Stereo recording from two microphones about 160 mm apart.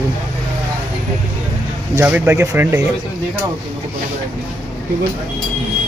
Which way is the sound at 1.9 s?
10° right (ahead or behind).